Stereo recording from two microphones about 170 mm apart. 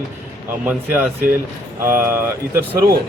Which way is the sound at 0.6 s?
10° right (ahead or behind).